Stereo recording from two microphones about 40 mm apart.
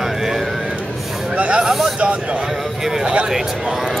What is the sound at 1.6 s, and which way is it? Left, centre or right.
Speech, centre.